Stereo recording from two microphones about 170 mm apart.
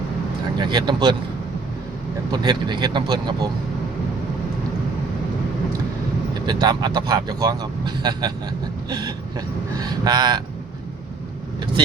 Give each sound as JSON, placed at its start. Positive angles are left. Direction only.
{"t": 0.6, "sound": "speech", "side_deg": -25}
{"t": 2.3, "sound": "speech", "side_deg": -25}
{"t": 6.4, "sound": "speech", "side_deg": -25}